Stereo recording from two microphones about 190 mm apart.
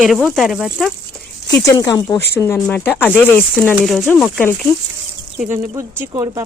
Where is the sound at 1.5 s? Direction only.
20° left (ahead or behind).